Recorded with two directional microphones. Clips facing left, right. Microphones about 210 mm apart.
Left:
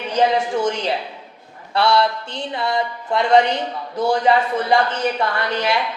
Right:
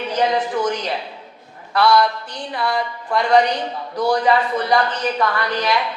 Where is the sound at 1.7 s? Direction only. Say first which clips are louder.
Right 1 dB; 25° left (ahead or behind).